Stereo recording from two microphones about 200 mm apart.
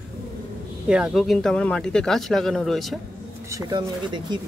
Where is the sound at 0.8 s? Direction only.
5° right (ahead or behind).